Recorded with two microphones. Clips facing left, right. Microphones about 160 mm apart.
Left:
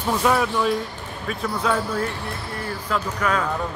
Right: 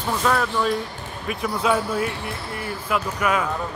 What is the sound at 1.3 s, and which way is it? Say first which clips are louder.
A man's voice: right 2 dB; 15° right (ahead or behind).